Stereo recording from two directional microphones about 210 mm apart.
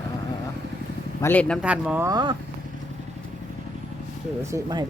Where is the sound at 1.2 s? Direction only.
10° left (ahead or behind).